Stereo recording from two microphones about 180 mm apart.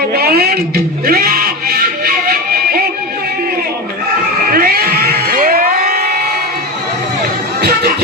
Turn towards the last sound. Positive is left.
turn(degrees=-60)  # may be behind; listen again after turning